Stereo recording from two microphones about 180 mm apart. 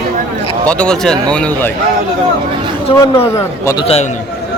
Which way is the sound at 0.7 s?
5° left (ahead or behind).